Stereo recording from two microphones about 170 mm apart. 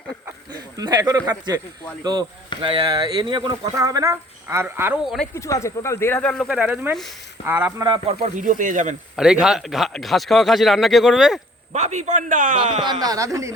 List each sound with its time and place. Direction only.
0.5 s speech: 25° right (ahead or behind)
2.6 s speech: 30° right (ahead or behind); by 4.9 s 10° right (ahead or behind)
5.0 s a man's voice: centre (ahead or behind)
5.3 s speech: 15° left (ahead or behind)
6.5 s speech: 10° right (ahead or behind)
7.9 s speech: 25° right (ahead or behind)
8.4 s a man's voice: 50° right (ahead or behind)
9.1 s a man's voice: 5° right (ahead or behind)
11.7 s a man's voice: 45° right (ahead or behind)
12.8 s speech: 25° right (ahead or behind)